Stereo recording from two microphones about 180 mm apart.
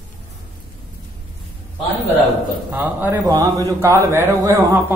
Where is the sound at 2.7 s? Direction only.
10° right (ahead or behind).